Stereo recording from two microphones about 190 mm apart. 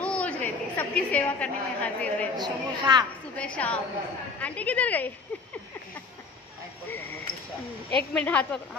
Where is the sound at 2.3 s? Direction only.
20° right (ahead or behind).